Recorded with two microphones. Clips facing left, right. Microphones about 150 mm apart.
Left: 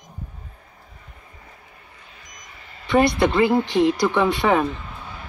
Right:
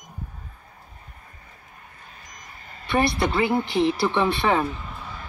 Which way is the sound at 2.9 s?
20° left (ahead or behind).